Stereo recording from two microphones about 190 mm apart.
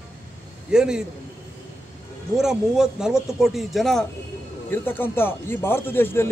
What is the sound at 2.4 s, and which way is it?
Speech, 5° right (ahead or behind).